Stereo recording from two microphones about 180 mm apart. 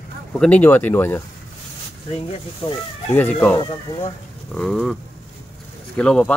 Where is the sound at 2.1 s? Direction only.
30° left (ahead or behind).